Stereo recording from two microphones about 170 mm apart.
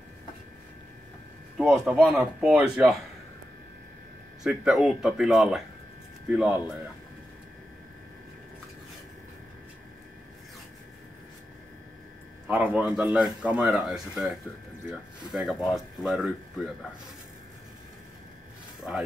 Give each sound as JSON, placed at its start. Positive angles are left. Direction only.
{"t": 1.6, "sound": "speech", "side_deg": 0}
{"t": 4.4, "sound": "speech", "side_deg": 0}
{"t": 12.4, "sound": "speech", "side_deg": -10}
{"t": 18.8, "sound": "speech", "side_deg": -5}